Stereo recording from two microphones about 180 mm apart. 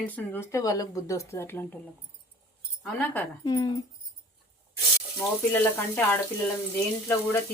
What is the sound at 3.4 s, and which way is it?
Speech, 20° left (ahead or behind).